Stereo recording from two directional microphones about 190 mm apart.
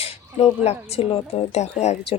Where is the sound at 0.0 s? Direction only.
30° left (ahead or behind).